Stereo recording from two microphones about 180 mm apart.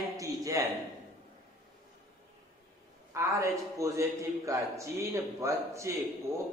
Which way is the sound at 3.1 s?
15° right (ahead or behind).